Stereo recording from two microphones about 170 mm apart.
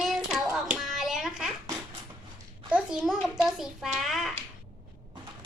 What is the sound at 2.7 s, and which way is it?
A child's voice, 5° right (ahead or behind).